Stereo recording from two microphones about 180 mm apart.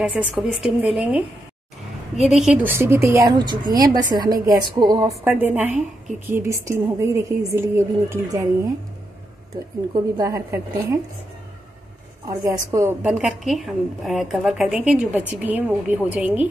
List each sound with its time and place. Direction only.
0.0 s a woman's voice: centre (ahead or behind)
2.2 s a woman's voice: 5° right (ahead or behind); by 5.1 s 25° right (ahead or behind)
5.2 s a woman's voice: 10° right (ahead or behind)
9.9 s a woman's voice: 20° right (ahead or behind)
12.3 s a woman's voice: 20° right (ahead or behind)
13.0 s a woman's voice: centre (ahead or behind)